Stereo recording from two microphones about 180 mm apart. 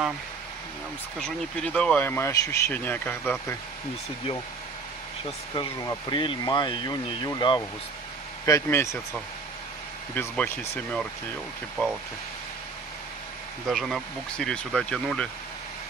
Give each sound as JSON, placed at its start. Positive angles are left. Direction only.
{"t": 1.2, "sound": "speech", "side_deg": 5}
{"t": 5.5, "sound": "speech", "side_deg": 20}
{"t": 10.1, "sound": "speech", "side_deg": 10}
{"t": 13.7, "sound": "speech", "side_deg": 0}